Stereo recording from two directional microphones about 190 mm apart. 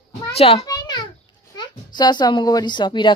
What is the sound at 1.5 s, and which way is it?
Speech, 20° left (ahead or behind).